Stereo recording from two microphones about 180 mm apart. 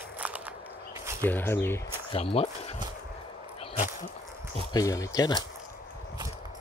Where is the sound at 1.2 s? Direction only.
10° left (ahead or behind).